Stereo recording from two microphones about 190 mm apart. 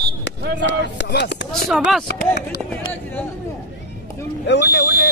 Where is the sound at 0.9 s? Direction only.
65° left (ahead or behind).